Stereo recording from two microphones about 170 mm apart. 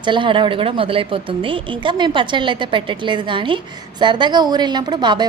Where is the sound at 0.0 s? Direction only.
30° right (ahead or behind).